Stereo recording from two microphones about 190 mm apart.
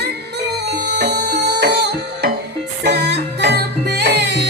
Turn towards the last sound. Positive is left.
turn(degrees=-65)  # may be behind; listen again after turning